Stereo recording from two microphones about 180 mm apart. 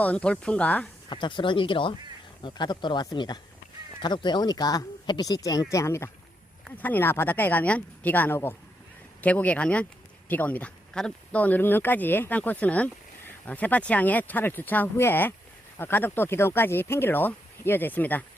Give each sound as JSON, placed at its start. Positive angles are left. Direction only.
{"t": 0.0, "sound": "speech", "side_deg": 5}
{"t": 1.1, "sound": "speech", "side_deg": 25}